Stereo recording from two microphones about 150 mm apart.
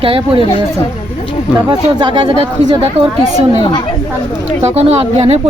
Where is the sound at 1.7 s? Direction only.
30° right (ahead or behind).